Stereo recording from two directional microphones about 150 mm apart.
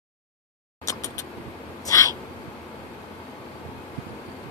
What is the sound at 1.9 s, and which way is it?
Hiccup, 20° left (ahead or behind).